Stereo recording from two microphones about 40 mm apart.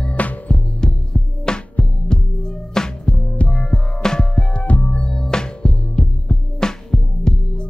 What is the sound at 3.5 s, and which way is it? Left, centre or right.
Music, centre.